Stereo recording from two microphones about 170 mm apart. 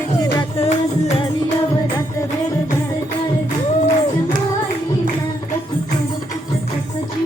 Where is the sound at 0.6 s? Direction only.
35° left (ahead or behind).